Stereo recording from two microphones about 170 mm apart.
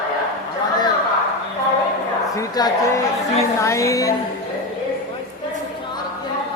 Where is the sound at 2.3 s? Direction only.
20° left (ahead or behind).